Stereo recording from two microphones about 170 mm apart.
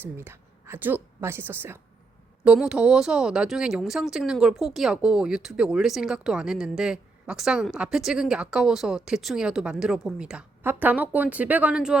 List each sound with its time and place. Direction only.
0.0 s a woman's voice: 15° right (ahead or behind)